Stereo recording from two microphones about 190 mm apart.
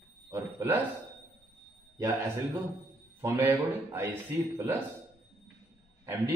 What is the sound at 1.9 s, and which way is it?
Speech, 15° right (ahead or behind).